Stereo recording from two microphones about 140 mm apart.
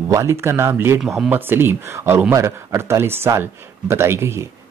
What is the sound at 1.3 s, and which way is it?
Speech, 15° right (ahead or behind).